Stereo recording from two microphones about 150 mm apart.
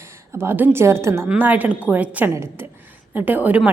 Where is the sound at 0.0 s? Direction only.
15° right (ahead or behind).